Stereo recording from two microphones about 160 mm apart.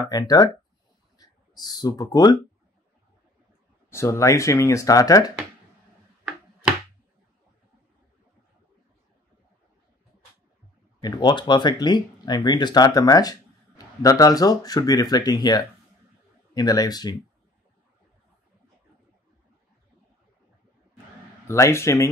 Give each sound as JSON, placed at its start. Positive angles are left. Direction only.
{"t": 0.0, "sound": "speech", "side_deg": 20}
{"t": 3.9, "sound": "speech", "side_deg": 15}
{"t": 11.0, "sound": "speech", "side_deg": 25}
{"t": 21.5, "sound": "speech", "side_deg": 15}